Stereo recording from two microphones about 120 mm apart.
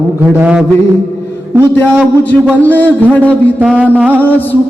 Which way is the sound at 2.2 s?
15° left (ahead or behind).